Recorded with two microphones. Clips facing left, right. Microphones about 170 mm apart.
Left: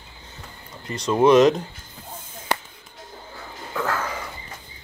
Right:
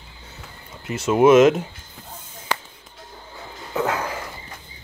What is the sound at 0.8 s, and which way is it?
Speech, 5° right (ahead or behind).